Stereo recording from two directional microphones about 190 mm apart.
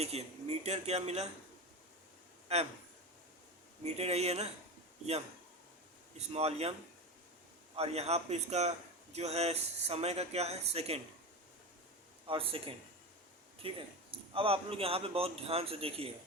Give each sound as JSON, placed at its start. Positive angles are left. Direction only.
{"t": 0.0, "sound": "speech", "side_deg": -35}
{"t": 2.5, "sound": "speech", "side_deg": -35}
{"t": 3.8, "sound": "speech", "side_deg": -35}
{"t": 6.1, "sound": "speech", "side_deg": -35}
{"t": 7.8, "sound": "speech", "side_deg": -35}
{"t": 12.3, "sound": "speech", "side_deg": -30}